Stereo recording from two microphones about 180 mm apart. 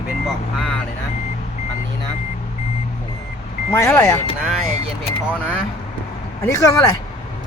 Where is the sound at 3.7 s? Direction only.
15° left (ahead or behind).